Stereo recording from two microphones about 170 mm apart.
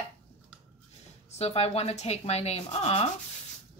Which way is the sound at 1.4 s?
35° left (ahead or behind).